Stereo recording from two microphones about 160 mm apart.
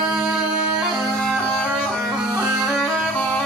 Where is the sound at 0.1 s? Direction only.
5° right (ahead or behind).